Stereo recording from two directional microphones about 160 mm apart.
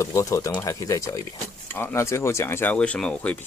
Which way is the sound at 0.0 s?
20° left (ahead or behind).